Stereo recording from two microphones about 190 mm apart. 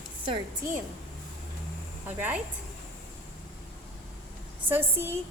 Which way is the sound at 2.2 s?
5° right (ahead or behind).